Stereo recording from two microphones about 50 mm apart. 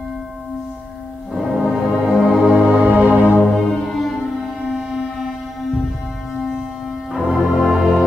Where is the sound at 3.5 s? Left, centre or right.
Centre.